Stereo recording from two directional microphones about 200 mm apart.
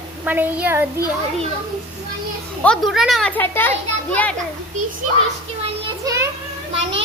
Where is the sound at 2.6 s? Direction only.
Centre (ahead or behind).